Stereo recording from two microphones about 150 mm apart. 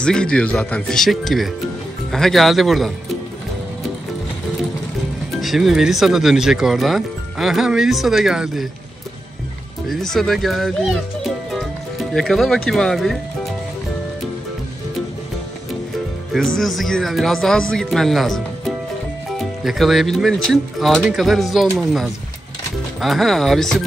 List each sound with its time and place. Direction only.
0.0 s speech: 5° left (ahead or behind)
5.4 s speech: centre (ahead or behind)
9.8 s speech: 5° left (ahead or behind)
16.3 s speech: centre (ahead or behind)